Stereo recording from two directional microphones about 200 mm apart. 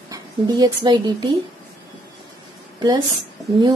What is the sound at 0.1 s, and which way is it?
Speech, 20° right (ahead or behind).